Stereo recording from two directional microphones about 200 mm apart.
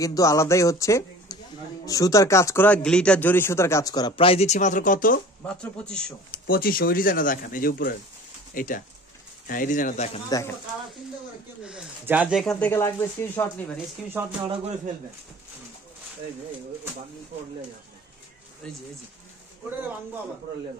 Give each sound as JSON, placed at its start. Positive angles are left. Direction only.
{"t": 0.0, "sound": "speech", "side_deg": 15}
{"t": 5.5, "sound": "speech", "side_deg": 5}
{"t": 6.3, "sound": "speech", "side_deg": 45}
{"t": 11.6, "sound": "speech", "side_deg": -5}
{"t": 14.2, "sound": "speech", "side_deg": -10}